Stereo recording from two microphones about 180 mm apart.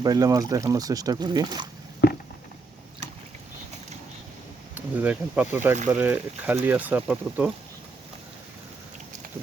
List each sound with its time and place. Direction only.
0.0 s speech: 20° right (ahead or behind)
2.0 s a sound: 65° left (ahead or behind)
4.7 s speech: 10° right (ahead or behind)